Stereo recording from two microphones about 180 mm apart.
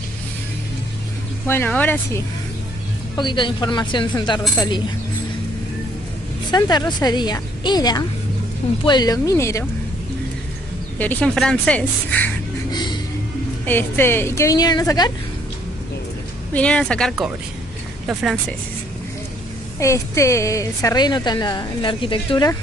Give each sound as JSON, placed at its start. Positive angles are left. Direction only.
{"t": 1.5, "sound": "a woman's voice", "side_deg": 10}
{"t": 3.2, "sound": "a woman's voice", "side_deg": 25}
{"t": 6.5, "sound": "a woman's voice", "side_deg": 20}
{"t": 11.0, "sound": "a woman's voice", "side_deg": 10}
{"t": 12.7, "sound": "music", "side_deg": 25}
{"t": 13.7, "sound": "a woman's voice", "side_deg": 10}
{"t": 16.5, "sound": "speech", "side_deg": 5}
{"t": 19.8, "sound": "a woman's voice", "side_deg": 15}